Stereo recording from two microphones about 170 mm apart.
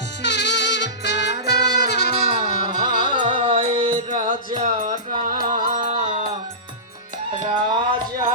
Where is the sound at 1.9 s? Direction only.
75° left (ahead or behind).